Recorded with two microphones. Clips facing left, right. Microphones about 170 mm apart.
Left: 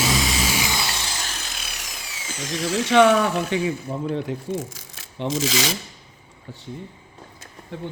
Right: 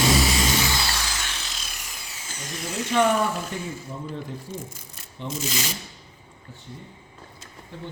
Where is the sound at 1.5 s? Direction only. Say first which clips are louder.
Left 3 dB; 65° left (ahead or behind); by 5.7 s 90° left.